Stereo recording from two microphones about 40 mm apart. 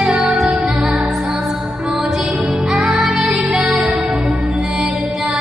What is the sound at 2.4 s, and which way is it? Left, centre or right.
Music, right.